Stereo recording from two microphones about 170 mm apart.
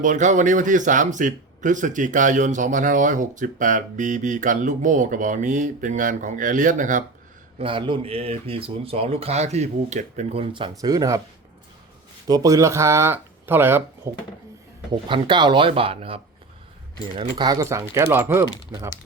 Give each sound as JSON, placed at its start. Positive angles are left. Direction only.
{"t": 0.0, "sound": "speech", "side_deg": -45}
{"t": 7.6, "sound": "speech", "side_deg": -30}
{"t": 12.3, "sound": "speech", "side_deg": -20}
{"t": 15.0, "sound": "speech", "side_deg": -30}